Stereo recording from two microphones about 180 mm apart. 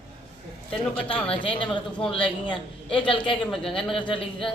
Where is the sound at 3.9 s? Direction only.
30° left (ahead or behind).